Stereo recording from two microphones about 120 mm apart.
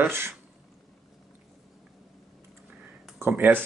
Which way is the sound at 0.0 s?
20° right (ahead or behind).